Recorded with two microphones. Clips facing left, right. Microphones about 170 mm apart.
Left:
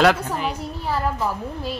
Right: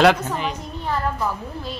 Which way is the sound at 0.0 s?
5° left (ahead or behind).